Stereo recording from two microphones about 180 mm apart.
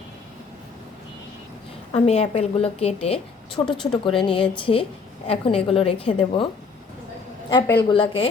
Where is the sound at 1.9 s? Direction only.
35° left (ahead or behind).